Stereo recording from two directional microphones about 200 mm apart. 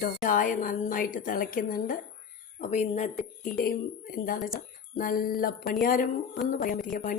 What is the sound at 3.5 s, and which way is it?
A woman's voice, 50° left (ahead or behind).